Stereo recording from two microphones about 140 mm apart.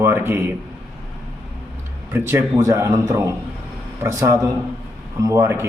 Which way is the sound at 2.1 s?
20° right (ahead or behind).